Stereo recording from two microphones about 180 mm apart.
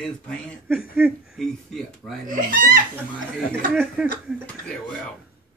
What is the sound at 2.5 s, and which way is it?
Speech, 50° right (ahead or behind).